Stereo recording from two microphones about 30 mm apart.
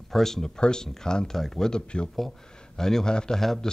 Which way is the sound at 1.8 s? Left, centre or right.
Left.